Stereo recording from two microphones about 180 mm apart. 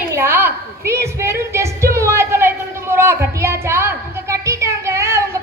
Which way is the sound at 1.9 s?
15° right (ahead or behind).